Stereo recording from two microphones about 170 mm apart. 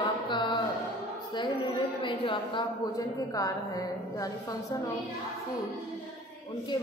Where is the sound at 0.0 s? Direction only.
25° left (ahead or behind).